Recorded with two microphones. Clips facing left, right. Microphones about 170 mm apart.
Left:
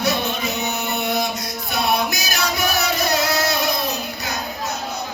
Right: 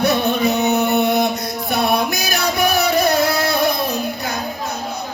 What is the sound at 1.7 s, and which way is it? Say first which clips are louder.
Music: right 3 dB; 55° right (ahead or behind).